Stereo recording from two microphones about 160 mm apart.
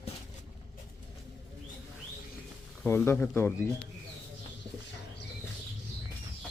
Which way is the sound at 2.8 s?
15° left (ahead or behind).